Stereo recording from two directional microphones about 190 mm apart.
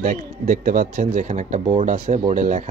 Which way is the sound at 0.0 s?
45° right (ahead or behind).